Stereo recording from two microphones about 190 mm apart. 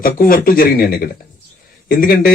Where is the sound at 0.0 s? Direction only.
50° left (ahead or behind).